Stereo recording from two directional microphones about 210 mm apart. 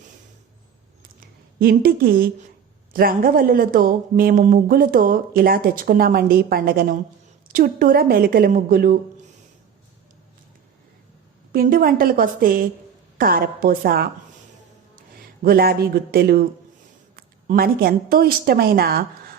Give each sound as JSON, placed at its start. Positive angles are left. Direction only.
{"t": 1.5, "sound": "speech", "side_deg": -45}
{"t": 11.5, "sound": "speech", "side_deg": -45}
{"t": 15.4, "sound": "speech", "side_deg": -45}